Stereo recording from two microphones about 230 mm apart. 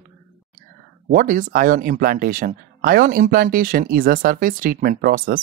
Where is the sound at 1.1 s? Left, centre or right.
Right.